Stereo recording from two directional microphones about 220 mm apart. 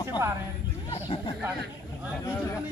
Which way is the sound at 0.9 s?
20° left (ahead or behind).